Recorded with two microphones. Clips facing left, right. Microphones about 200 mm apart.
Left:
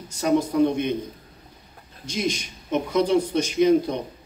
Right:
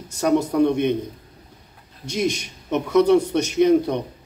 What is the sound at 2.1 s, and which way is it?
Speech, 65° right (ahead or behind).